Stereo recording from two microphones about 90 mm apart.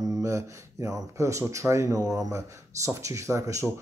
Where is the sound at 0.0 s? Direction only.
40° right (ahead or behind).